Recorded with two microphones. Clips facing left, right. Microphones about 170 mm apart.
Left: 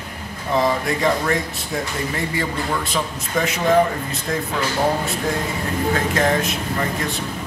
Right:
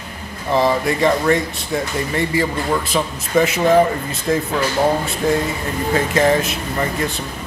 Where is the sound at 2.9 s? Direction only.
5° right (ahead or behind).